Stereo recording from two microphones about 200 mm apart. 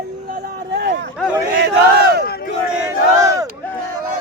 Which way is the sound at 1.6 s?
55° right (ahead or behind).